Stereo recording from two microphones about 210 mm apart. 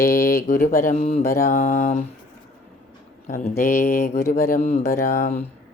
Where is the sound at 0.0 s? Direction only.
45° left (ahead or behind).